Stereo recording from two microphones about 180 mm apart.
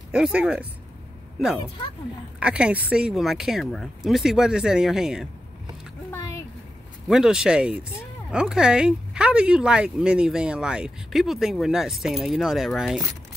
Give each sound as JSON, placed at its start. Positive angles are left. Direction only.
{"t": 0.1, "sound": "speech", "side_deg": -5}
{"t": 6.1, "sound": "a sound", "side_deg": 15}
{"t": 7.1, "sound": "speech", "side_deg": -5}